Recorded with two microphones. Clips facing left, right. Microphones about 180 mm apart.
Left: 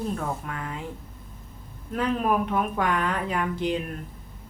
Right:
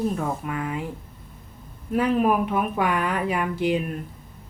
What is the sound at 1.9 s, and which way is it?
Speech, 10° right (ahead or behind).